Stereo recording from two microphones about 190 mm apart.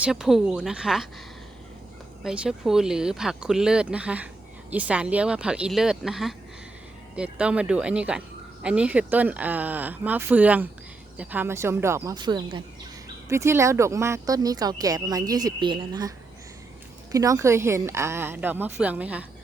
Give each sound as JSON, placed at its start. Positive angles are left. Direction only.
{"t": 0.0, "sound": "speech", "side_deg": 0}
{"t": 2.2, "sound": "a woman's voice", "side_deg": -5}